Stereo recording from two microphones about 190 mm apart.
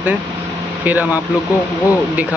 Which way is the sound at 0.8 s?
10° right (ahead or behind).